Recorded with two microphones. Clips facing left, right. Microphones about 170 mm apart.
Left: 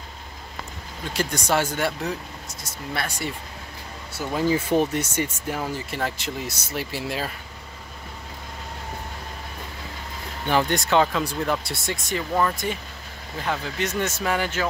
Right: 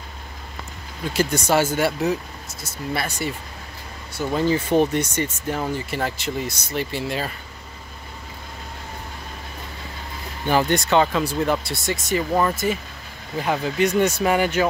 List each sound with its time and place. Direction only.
1.1 s speech: 5° right (ahead or behind)
10.5 s speech: centre (ahead or behind)